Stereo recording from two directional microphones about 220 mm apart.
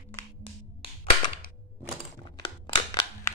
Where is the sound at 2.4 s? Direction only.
20° left (ahead or behind).